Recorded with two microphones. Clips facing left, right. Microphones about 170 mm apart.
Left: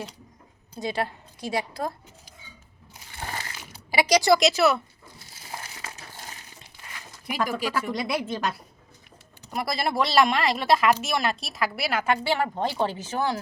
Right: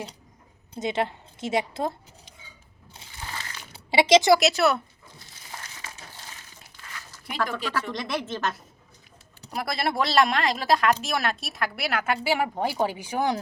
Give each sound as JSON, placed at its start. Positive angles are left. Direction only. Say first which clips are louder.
{"t": 0.7, "sound": "a woman's voice", "louder": "right 2 dB", "side_deg": -20}
{"t": 3.2, "sound": "mechanisms", "louder": "left 3 dB", "side_deg": 50}
{"t": 3.9, "sound": "speech", "louder": "right 4 dB", "side_deg": -25}
{"t": 4.3, "sound": "a woman's voice", "louder": "even", "side_deg": 0}
{"t": 7.3, "sound": "speech", "louder": "left 2 dB", "side_deg": 10}
{"t": 9.5, "sound": "a woman's voice", "louder": "even", "side_deg": 0}